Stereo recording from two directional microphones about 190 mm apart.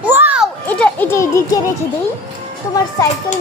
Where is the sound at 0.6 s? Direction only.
10° left (ahead or behind).